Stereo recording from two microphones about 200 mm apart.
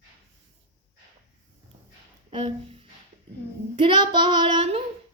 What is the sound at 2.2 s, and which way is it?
A woman's voice, 30° right (ahead or behind).